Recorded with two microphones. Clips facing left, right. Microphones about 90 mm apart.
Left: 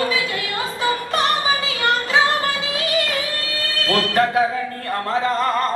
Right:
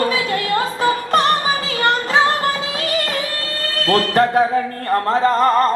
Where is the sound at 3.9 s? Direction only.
40° right (ahead or behind).